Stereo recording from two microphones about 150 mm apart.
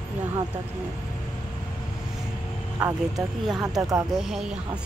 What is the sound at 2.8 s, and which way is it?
Speech, 20° right (ahead or behind).